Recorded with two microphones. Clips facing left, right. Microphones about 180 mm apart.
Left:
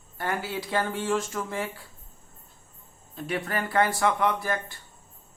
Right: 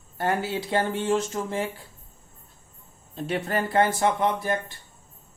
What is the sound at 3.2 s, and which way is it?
Speech, 30° right (ahead or behind).